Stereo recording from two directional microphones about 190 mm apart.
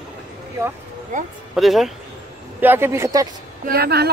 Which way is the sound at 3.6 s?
55° right (ahead or behind).